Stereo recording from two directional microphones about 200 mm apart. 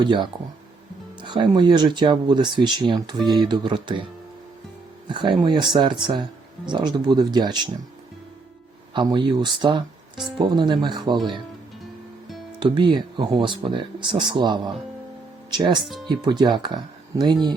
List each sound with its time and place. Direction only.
0.0 s speech: 25° right (ahead or behind)
5.0 s speech: 25° right (ahead or behind)
8.9 s speech: 25° right (ahead or behind)
12.5 s speech: 25° right (ahead or behind)